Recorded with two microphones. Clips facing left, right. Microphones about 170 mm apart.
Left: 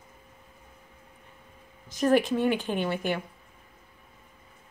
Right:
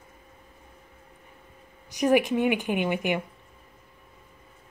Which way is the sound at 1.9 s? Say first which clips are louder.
Right 1 dB; 15° right (ahead or behind).